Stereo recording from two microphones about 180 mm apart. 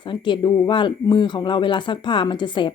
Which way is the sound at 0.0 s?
25° left (ahead or behind).